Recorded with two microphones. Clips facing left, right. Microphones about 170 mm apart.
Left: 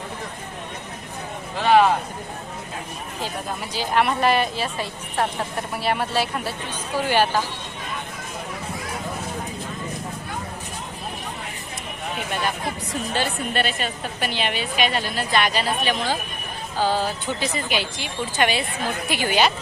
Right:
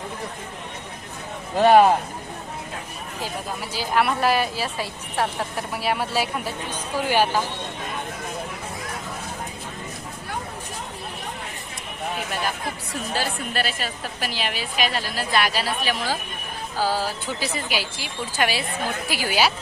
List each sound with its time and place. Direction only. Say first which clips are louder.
1.5 s speech: right 2 dB; 45° right (ahead or behind)
3.8 s a woman's voice: left 1 dB; 5° right (ahead or behind)
12.9 s a woman's voice: left 1 dB; centre (ahead or behind)